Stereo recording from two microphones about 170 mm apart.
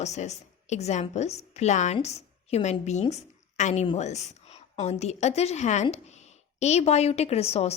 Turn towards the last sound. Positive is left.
turn(degrees=35)  # may be behind; listen again after turning